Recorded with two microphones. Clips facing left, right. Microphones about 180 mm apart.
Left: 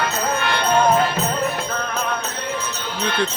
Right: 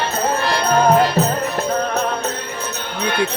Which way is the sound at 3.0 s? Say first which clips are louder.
Right 2 dB; 65° right (ahead or behind).